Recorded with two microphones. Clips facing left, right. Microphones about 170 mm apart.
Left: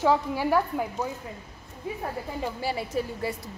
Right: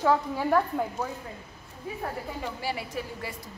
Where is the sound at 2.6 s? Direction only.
30° left (ahead or behind).